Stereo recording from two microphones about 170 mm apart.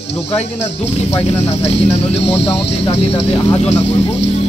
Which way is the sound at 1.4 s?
40° left (ahead or behind).